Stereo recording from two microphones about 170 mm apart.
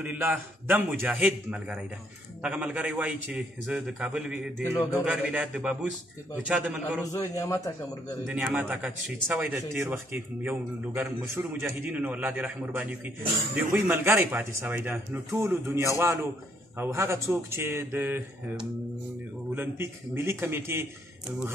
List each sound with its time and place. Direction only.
0.0 s a man's voice: 10° right (ahead or behind)
7.1 s a man's voice: 20° left (ahead or behind)
8.5 s a man's voice: 10° right (ahead or behind)
19.5 s a man's voice: 15° right (ahead or behind)